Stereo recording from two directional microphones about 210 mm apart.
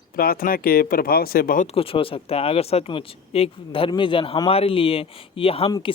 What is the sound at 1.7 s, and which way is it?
Speech, 25° left (ahead or behind).